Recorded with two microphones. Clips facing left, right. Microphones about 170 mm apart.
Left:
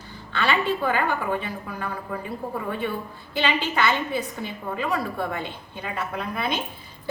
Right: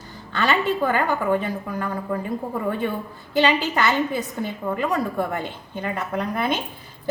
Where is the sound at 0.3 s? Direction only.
40° right (ahead or behind).